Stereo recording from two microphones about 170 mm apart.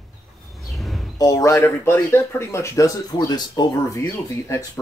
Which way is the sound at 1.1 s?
20° left (ahead or behind).